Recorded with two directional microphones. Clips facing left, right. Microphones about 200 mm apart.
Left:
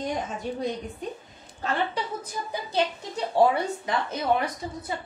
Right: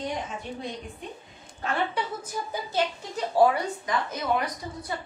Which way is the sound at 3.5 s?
25° left (ahead or behind).